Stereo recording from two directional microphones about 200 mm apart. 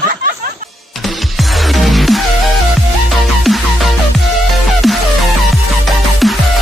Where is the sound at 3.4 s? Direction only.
Centre (ahead or behind).